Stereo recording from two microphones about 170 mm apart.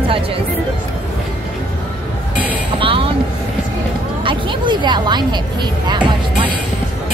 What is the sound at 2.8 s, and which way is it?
Vehicle, 30° right (ahead or behind).